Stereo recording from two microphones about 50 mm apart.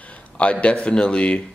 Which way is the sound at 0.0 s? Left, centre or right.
Left.